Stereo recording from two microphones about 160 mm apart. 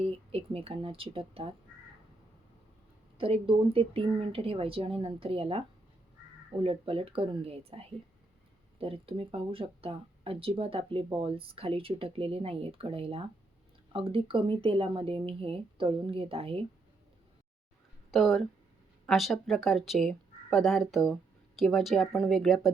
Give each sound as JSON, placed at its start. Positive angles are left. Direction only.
{"t": 0.0, "sound": "speech", "side_deg": -35}
{"t": 3.2, "sound": "speech", "side_deg": -35}
{"t": 18.1, "sound": "speech", "side_deg": 0}